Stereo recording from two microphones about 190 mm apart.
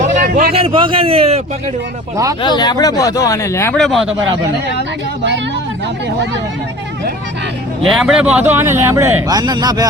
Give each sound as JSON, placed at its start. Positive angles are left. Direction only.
{"t": 0.0, "sound": "a sound", "side_deg": -45}
{"t": 0.5, "sound": "a man's voice", "side_deg": -30}
{"t": 2.4, "sound": "speech", "side_deg": 20}
{"t": 3.8, "sound": "speech", "side_deg": 0}
{"t": 7.9, "sound": "speech", "side_deg": -5}